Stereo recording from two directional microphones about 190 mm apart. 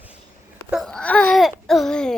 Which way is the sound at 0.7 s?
Centre (ahead or behind).